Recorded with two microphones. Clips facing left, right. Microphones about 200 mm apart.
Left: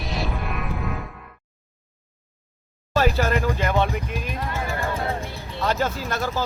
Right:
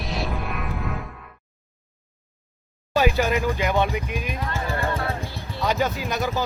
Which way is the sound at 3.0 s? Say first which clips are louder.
Even; centre (ahead or behind).